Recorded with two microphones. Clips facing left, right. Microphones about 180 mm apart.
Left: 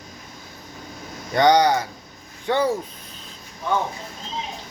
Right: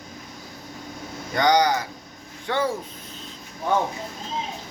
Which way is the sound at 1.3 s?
25° left (ahead or behind).